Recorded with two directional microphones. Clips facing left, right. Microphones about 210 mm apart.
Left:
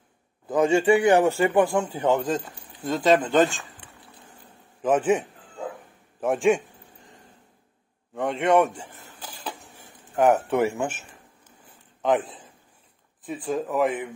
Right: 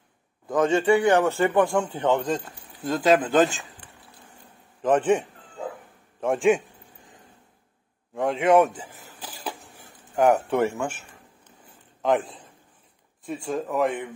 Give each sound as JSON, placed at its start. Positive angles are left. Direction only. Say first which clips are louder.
{"t": 0.5, "sound": "a man's voice", "louder": "left 1 dB", "side_deg": 10}
{"t": 4.8, "sound": "a man's voice", "louder": "right 1 dB", "side_deg": 5}
{"t": 6.2, "sound": "a man's voice", "louder": "even", "side_deg": 0}
{"t": 8.1, "sound": "a sound", "louder": "right 2 dB", "side_deg": 0}
{"t": 10.8, "sound": "speech", "louder": "left 1 dB", "side_deg": 20}
{"t": 12.0, "sound": "a man's voice", "louder": "even", "side_deg": 0}